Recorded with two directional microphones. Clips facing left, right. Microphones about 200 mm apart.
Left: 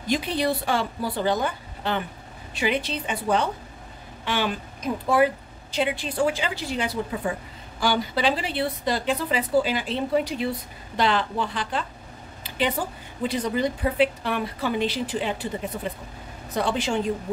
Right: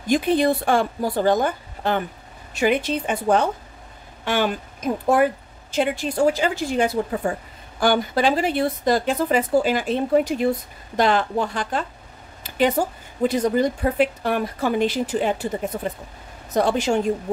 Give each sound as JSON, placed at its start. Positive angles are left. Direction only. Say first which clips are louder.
{"t": 0.0, "sound": "a woman's voice", "louder": "right 6 dB", "side_deg": -50}